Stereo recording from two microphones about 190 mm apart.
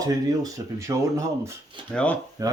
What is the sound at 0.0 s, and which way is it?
Speech, 20° right (ahead or behind).